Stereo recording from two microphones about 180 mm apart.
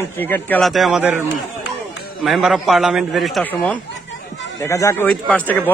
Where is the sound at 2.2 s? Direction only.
Centre (ahead or behind).